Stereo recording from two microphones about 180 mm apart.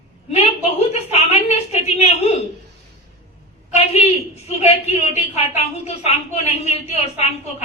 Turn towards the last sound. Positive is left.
turn(degrees=35)  # may be behind; listen again after turning